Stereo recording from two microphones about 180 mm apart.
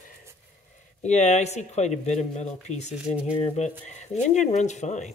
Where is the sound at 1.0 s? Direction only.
40° left (ahead or behind).